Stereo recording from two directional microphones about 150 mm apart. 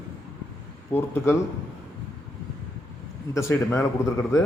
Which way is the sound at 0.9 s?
15° left (ahead or behind).